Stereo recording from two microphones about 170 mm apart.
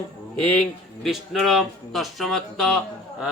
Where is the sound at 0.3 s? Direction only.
5° left (ahead or behind).